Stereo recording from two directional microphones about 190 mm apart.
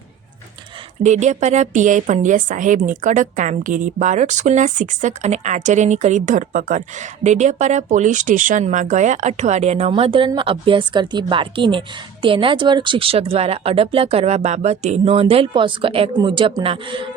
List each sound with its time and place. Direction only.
1.0 s a woman's voice: 40° right (ahead or behind)